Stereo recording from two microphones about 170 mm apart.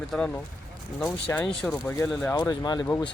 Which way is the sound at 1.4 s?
Centre (ahead or behind).